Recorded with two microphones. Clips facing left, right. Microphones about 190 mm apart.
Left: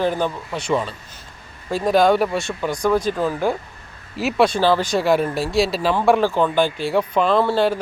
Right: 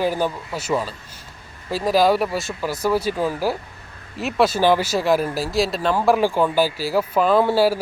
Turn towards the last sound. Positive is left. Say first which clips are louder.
# right 1 dB
turn(degrees=-5)  # may be behind; listen again after turning